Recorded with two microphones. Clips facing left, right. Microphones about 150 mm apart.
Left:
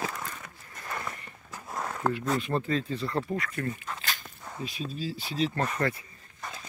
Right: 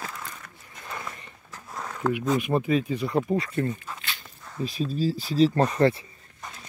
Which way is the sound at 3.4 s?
25° right (ahead or behind).